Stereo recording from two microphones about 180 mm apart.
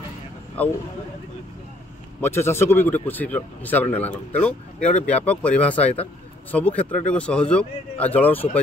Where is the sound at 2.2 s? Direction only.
15° left (ahead or behind).